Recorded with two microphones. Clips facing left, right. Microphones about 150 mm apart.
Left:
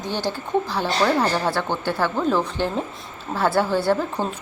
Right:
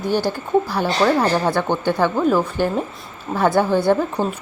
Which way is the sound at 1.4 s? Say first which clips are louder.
Right 4 dB; 15° right (ahead or behind).